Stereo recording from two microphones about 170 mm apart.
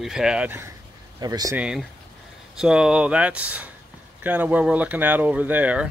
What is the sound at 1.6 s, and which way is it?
Speech, 5° right (ahead or behind).